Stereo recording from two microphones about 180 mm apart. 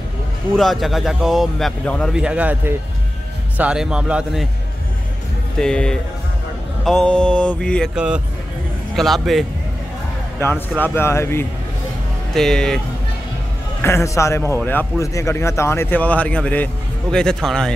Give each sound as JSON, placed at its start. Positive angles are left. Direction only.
{"t": 0.6, "sound": "a man's voice", "side_deg": 0}
{"t": 2.1, "sound": "a man's voice", "side_deg": -5}
{"t": 5.6, "sound": "a man's voice", "side_deg": 5}
{"t": 10.8, "sound": "a man's voice", "side_deg": 15}
{"t": 12.4, "sound": "a man's voice", "side_deg": 5}
{"t": 13.8, "sound": "a man's voice", "side_deg": 15}